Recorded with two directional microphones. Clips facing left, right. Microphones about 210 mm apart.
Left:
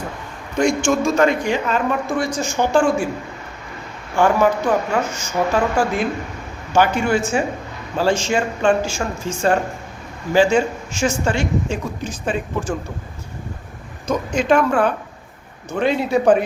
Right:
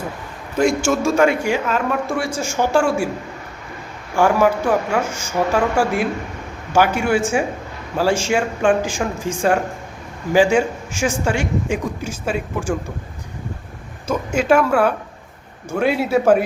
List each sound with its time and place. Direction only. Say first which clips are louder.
0.5 s a man's voice: even; 5° right (ahead or behind)
4.1 s a man's voice: even; 10° right (ahead or behind)
14.3 s a man's voice: right 1 dB; 10° right (ahead or behind)